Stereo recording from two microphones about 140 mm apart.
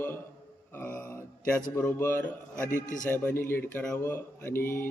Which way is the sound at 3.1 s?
15° left (ahead or behind).